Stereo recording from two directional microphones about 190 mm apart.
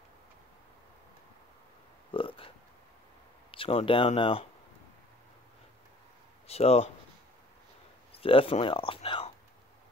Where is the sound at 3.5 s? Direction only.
30° left (ahead or behind).